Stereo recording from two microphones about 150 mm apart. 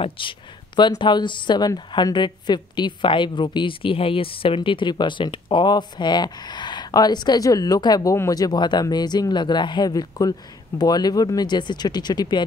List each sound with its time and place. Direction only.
0.0 s speech: 35° left (ahead or behind)